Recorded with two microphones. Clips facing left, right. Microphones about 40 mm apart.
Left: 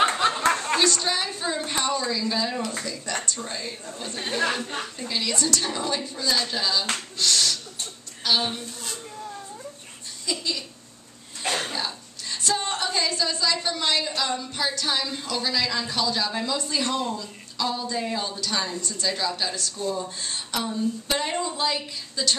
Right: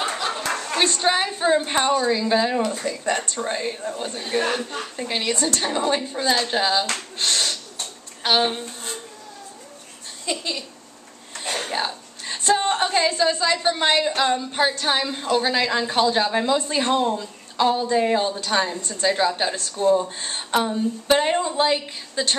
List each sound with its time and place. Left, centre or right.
0.2 s a sound: left
0.7 s a woman's voice: right
7.2 s a sound: right
8.2 s speech: right
10.2 s a woman's voice: right
11.6 s a woman's voice: right